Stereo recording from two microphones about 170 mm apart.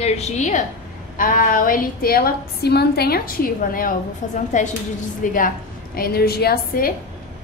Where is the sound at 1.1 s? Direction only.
55° left (ahead or behind).